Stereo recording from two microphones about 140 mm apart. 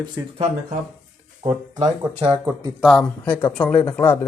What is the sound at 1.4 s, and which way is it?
Speech, 30° right (ahead or behind).